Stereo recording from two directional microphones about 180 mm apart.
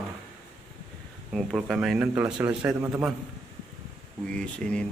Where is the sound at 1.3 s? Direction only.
Centre (ahead or behind).